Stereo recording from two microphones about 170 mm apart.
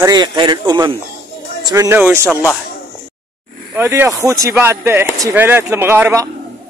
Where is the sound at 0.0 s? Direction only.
25° right (ahead or behind).